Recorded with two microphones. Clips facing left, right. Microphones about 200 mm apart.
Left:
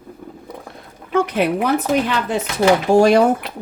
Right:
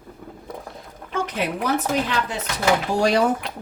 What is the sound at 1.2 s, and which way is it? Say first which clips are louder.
Speech: left 7 dB; 60° left (ahead or behind).